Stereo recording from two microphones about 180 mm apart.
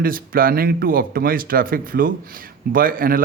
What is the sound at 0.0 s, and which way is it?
A man's voice, 55° right (ahead or behind).